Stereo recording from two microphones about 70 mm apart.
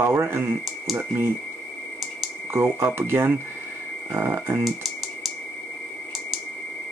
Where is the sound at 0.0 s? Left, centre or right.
Right.